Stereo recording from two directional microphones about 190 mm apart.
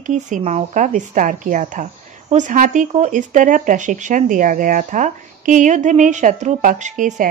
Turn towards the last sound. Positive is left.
turn(degrees=-40)  # may be behind; listen again after turning